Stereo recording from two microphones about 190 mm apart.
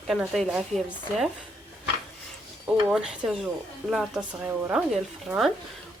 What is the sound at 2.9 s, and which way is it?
Speech, 5° right (ahead or behind).